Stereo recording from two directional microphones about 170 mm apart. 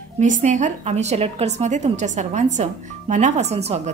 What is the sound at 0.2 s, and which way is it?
A woman's voice, 50° right (ahead or behind).